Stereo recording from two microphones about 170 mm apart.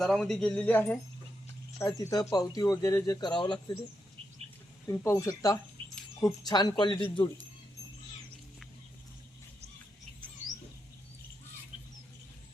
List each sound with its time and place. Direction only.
0.0 s speech: 5° left (ahead or behind)
1.8 s speech: 20° left (ahead or behind)
4.9 s speech: 15° left (ahead or behind)